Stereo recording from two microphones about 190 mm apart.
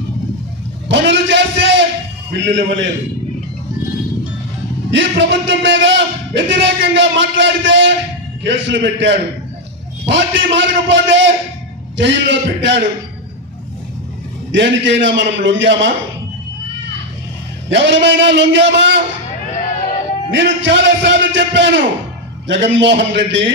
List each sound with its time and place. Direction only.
0.8 s a sound: 70° right (ahead or behind)
2.3 s speech: 70° right (ahead or behind)
4.9 s speech: 70° right (ahead or behind)
14.5 s speech: 75° right (ahead or behind)
17.6 s speech: 70° right (ahead or behind)
20.2 s speech: 75° right (ahead or behind)